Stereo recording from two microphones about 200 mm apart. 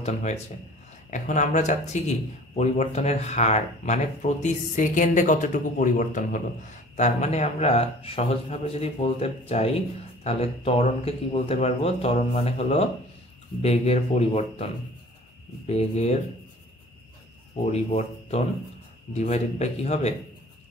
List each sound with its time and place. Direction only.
0.0 s speech: 35° left (ahead or behind)
17.6 s speech: 30° left (ahead or behind)